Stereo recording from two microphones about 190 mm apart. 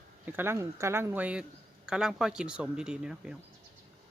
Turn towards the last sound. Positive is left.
turn(degrees=-5)  # may be behind; listen again after turning